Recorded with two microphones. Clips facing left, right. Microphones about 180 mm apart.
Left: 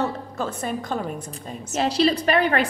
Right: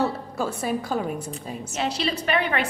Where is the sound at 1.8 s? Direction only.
40° left (ahead or behind).